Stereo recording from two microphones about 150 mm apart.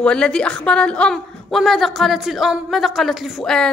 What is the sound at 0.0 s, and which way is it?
A woman's voice, 5° left (ahead or behind).